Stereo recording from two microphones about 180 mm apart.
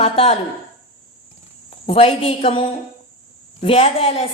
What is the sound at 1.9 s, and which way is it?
A woman's voice, 30° left (ahead or behind).